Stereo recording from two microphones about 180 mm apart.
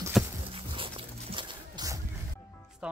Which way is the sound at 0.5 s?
30° right (ahead or behind).